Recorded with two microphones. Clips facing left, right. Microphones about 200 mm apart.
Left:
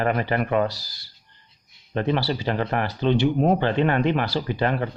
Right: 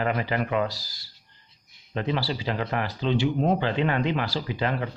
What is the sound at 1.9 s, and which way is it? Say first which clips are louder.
Speech: left 4 dB; 55° left (ahead or behind).